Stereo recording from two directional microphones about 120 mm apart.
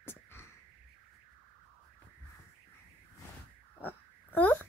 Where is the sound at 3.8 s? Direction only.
15° left (ahead or behind).